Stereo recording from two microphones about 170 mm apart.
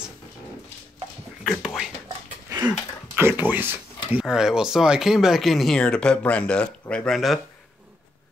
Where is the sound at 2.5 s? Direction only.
20° right (ahead or behind); by 7.4 s centre (ahead or behind).